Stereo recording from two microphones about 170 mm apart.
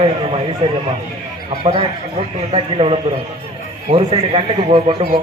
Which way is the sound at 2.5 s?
30° right (ahead or behind).